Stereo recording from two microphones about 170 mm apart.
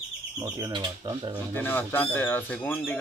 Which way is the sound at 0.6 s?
20° right (ahead or behind).